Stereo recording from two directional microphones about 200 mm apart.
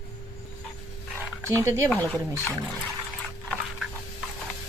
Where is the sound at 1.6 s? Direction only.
15° right (ahead or behind).